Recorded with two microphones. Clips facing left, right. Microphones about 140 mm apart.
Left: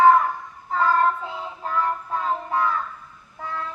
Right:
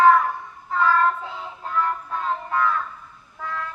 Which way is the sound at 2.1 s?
25° left (ahead or behind).